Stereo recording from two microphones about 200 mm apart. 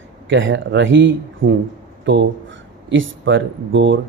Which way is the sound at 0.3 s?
70° right (ahead or behind).